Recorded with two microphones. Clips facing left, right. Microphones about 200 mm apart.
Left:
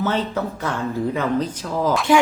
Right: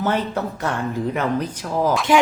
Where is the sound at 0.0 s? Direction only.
10° right (ahead or behind).